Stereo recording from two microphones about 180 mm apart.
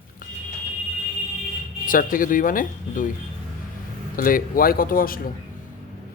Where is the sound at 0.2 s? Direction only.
50° left (ahead or behind).